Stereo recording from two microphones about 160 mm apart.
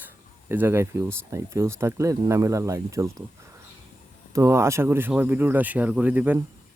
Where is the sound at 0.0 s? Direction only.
10° right (ahead or behind).